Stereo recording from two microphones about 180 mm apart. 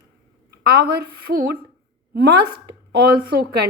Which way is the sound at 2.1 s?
65° right (ahead or behind).